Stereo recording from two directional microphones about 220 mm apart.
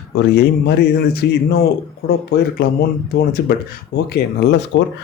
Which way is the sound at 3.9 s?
45° left (ahead or behind).